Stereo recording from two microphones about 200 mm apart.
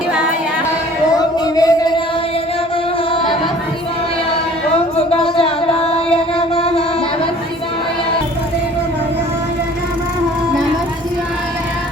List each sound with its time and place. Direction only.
1.1 s music: 20° left (ahead or behind)
5.4 s a sound: 30° left (ahead or behind)
6.3 s music: 30° left (ahead or behind)